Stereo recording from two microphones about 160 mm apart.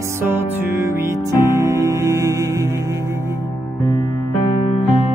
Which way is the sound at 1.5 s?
20° right (ahead or behind).